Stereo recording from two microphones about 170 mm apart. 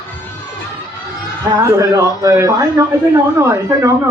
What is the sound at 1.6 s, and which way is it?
A man's voice, 20° right (ahead or behind).